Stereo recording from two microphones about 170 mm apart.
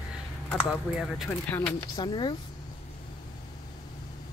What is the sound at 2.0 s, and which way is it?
Speech, 25° left (ahead or behind).